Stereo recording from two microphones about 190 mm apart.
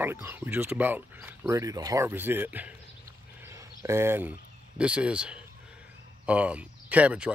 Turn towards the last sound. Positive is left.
turn(degrees=-5)  # may be behind; listen again after turning